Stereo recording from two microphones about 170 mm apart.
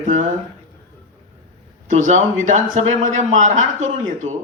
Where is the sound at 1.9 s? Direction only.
45° right (ahead or behind).